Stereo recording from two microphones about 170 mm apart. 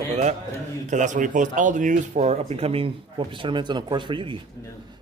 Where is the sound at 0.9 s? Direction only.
45° right (ahead or behind).